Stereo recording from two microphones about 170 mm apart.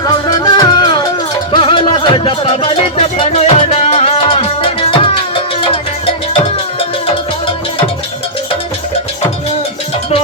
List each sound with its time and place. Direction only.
0.3 s music: 25° left (ahead or behind)